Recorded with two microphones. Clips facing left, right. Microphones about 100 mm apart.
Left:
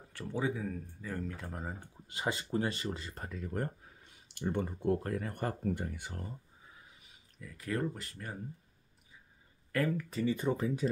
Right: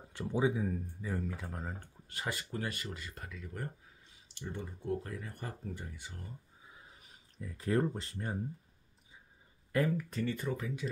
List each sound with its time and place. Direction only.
0.2 s speech: 15° right (ahead or behind); by 6.2 s 60° left (ahead or behind)
7.3 s speech: 30° right (ahead or behind)
9.8 s speech: 5° right (ahead or behind)
10.4 s speech: 30° left (ahead or behind)